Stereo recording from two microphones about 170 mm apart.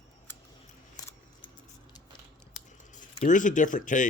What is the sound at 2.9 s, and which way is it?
Speech, 45° left (ahead or behind).